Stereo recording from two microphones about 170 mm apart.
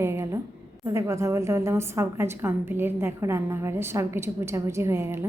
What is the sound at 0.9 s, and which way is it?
A woman's voice, 15° right (ahead or behind).